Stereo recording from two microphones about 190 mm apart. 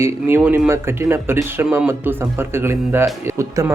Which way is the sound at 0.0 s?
10° right (ahead or behind).